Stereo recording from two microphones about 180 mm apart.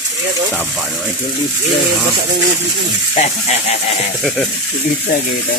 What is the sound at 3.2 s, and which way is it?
Speech, 40° left (ahead or behind).